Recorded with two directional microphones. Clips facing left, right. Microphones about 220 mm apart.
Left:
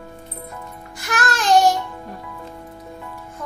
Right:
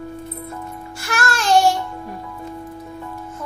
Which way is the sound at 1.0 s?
20° left (ahead or behind).